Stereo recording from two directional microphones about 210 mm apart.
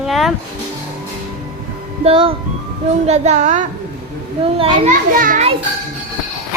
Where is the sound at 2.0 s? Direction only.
25° right (ahead or behind).